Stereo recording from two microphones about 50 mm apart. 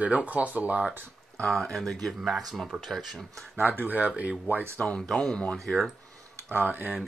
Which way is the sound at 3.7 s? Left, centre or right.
Right.